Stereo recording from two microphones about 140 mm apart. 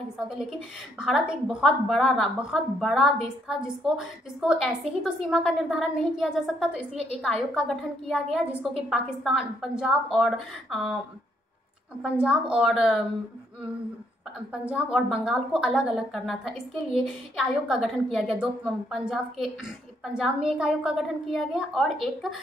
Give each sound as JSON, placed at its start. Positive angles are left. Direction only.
{"t": 0.3, "sound": "a woman's voice", "side_deg": -5}
{"t": 12.0, "sound": "a woman's voice", "side_deg": -5}
{"t": 14.5, "sound": "a woman's voice", "side_deg": -10}